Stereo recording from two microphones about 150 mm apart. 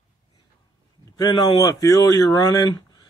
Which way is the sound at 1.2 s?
25° left (ahead or behind).